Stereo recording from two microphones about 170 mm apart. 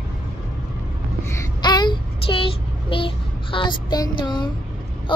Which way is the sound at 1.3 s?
25° left (ahead or behind).